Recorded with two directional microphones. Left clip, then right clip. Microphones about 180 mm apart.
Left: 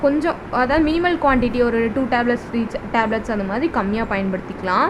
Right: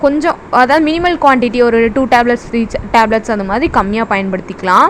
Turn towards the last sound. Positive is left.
turn(degrees=-40)  # may be behind; listen again after turning